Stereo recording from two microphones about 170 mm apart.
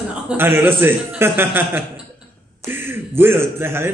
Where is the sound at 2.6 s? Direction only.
15° right (ahead or behind).